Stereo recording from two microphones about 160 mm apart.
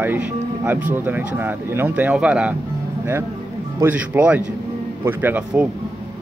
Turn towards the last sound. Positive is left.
turn(degrees=-10)  # may be behind; listen again after turning